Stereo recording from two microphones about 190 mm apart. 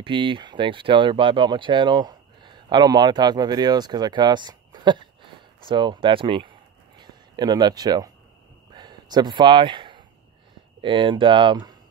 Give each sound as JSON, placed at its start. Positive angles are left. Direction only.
{"t": 0.0, "sound": "speech", "side_deg": -25}
{"t": 8.7, "sound": "a sound", "side_deg": -20}
{"t": 10.8, "sound": "speech", "side_deg": -25}